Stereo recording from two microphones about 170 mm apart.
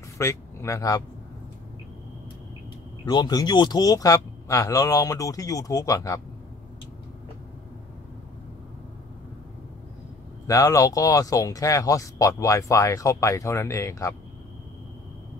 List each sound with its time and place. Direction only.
0.2 s speech: 15° left (ahead or behind)
3.1 s speech: 25° left (ahead or behind)
10.4 s speech: 20° left (ahead or behind)